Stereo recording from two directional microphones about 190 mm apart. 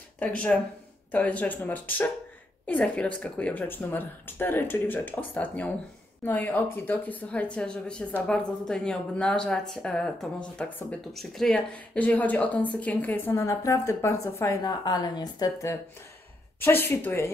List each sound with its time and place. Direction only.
0.2 s speech: 5° left (ahead or behind)